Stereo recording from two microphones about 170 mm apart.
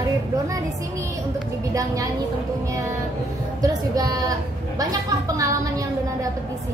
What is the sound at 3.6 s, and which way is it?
A woman's voice, 20° right (ahead or behind).